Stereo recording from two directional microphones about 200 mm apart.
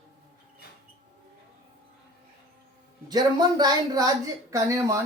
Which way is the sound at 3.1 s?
20° right (ahead or behind).